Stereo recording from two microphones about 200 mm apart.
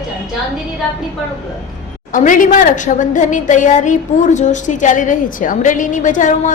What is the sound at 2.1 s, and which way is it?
A woman's voice, 40° left (ahead or behind).